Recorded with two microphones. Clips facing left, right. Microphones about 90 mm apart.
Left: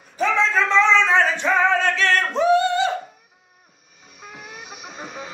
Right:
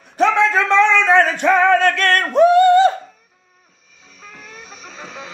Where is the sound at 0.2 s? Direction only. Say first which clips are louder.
Right 5 dB; 60° right (ahead or behind).